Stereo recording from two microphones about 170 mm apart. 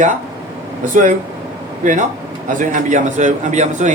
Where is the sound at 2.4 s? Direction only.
50° right (ahead or behind).